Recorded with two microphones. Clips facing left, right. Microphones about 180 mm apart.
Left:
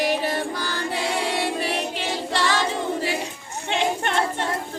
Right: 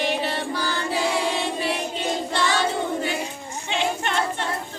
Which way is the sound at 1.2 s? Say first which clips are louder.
Even; 65° left (ahead or behind).